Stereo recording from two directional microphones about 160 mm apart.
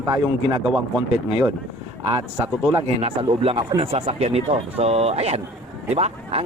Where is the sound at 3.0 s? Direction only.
35° right (ahead or behind).